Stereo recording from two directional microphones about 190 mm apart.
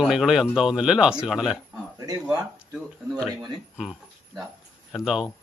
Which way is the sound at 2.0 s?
20° right (ahead or behind).